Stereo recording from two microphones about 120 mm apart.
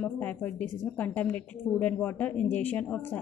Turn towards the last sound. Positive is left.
turn(degrees=15)  # may be behind; listen again after turning